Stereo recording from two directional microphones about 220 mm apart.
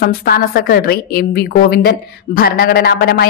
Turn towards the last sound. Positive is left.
turn(degrees=45)  # may be behind; listen again after turning